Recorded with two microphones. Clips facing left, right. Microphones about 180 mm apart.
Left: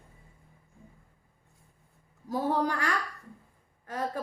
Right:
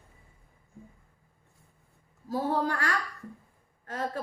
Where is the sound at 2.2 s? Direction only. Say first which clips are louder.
Even; 20° left (ahead or behind).